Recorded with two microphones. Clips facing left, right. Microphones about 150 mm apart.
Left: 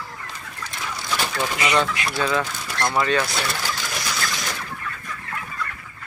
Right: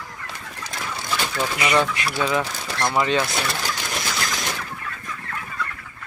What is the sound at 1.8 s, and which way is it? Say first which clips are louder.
Speech: right 1 dB; 10° right (ahead or behind).